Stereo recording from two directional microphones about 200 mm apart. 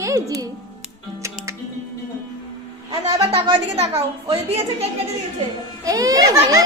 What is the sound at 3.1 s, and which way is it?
A woman's voice, 25° right (ahead or behind).